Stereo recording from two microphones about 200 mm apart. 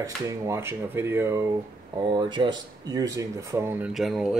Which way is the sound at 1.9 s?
20° right (ahead or behind).